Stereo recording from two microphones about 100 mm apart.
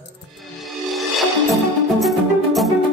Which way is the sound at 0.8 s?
Centre (ahead or behind).